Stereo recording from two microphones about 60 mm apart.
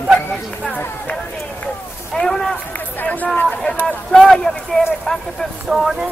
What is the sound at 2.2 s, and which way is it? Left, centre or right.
Run, centre.